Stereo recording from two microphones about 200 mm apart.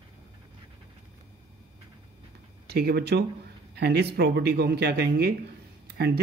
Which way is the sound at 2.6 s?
55° right (ahead or behind).